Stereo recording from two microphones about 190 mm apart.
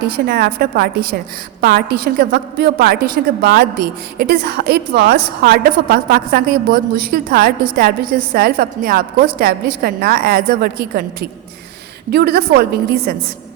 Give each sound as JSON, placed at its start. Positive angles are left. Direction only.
{"t": 0.0, "sound": "a woman's voice", "side_deg": -55}